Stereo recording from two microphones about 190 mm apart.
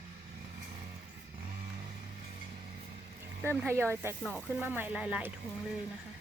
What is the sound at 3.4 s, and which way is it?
Speech, 15° right (ahead or behind).